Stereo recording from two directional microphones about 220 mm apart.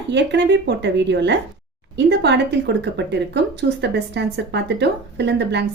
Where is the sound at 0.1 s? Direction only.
50° right (ahead or behind).